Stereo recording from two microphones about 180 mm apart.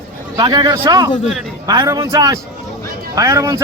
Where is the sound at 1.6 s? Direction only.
20° right (ahead or behind).